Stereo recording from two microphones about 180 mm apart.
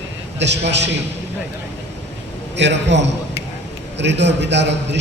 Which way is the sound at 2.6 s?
75° right (ahead or behind).